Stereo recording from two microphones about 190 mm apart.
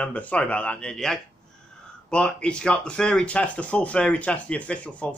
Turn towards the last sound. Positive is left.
turn(degrees=5)  # may be behind; listen again after turning